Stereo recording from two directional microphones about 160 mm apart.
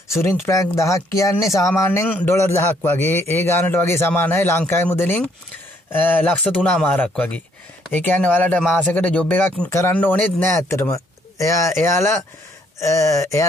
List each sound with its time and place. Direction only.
0.2 s speech: 15° left (ahead or behind)